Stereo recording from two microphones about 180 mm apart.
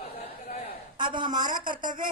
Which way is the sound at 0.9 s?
25° right (ahead or behind).